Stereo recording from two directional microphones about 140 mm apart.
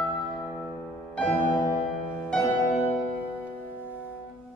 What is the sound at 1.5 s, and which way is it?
Music, 35° left (ahead or behind).